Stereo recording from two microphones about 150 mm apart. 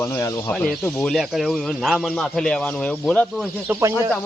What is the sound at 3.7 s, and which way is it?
Speech, 20° right (ahead or behind).